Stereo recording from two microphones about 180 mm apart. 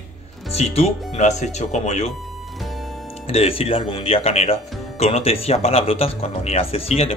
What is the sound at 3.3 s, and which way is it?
Speech, 30° left (ahead or behind).